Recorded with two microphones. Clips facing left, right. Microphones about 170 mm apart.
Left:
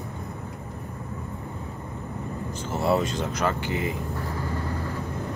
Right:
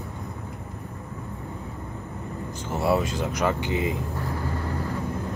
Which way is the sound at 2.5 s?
15° right (ahead or behind).